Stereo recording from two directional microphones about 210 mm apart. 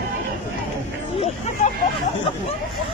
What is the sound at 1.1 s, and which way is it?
Speech, 30° left (ahead or behind).